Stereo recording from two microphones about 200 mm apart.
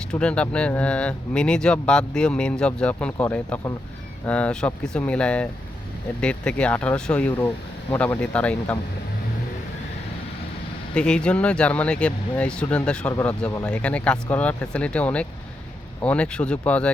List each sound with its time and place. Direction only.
0.1 s speech: 5° left (ahead or behind)
10.9 s speech: 5° left (ahead or behind)